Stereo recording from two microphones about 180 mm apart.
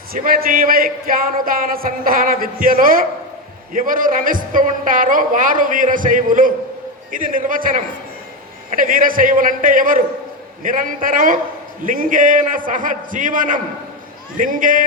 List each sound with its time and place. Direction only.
0.1 s speech: 55° right (ahead or behind)